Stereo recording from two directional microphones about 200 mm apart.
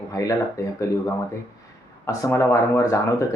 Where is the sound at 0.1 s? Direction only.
15° left (ahead or behind).